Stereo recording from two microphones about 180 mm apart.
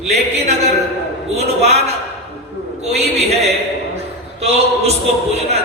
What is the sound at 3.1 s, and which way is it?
A man's voice, 35° right (ahead or behind).